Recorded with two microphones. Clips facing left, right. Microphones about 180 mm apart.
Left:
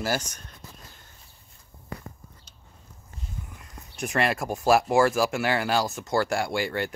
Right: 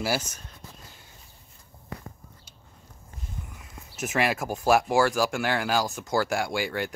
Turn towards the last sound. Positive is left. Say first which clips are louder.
# left 1 dB
turn(degrees=0)  # may be behind; listen again after turning